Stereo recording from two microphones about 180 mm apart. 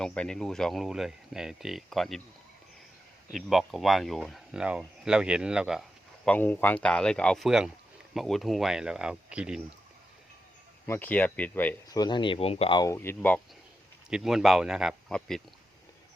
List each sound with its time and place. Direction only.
0.0 s speech: 5° left (ahead or behind)
3.3 s speech: centre (ahead or behind)
6.2 s speech: 10° left (ahead or behind)
10.8 s speech: 10° left (ahead or behind)
11.9 s speech: 25° left (ahead or behind)
14.1 s speech: centre (ahead or behind)